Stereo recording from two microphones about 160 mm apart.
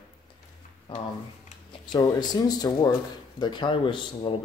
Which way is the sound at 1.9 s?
25° left (ahead or behind).